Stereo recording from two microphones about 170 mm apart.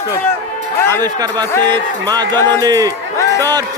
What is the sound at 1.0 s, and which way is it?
A man's voice, 25° right (ahead or behind).